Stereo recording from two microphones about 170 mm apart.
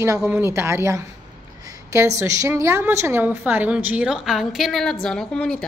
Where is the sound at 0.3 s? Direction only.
15° right (ahead or behind).